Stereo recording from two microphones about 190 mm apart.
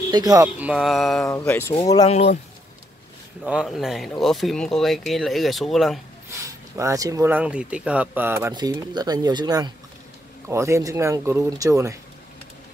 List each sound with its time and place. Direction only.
0.1 s speech: 20° right (ahead or behind)
0.6 s speech: 5° right (ahead or behind)
1.2 s speech: 10° left (ahead or behind)
2.0 s speech: 35° left (ahead or behind)
3.4 s speech: centre (ahead or behind)
6.3 s speech: 15° right (ahead or behind)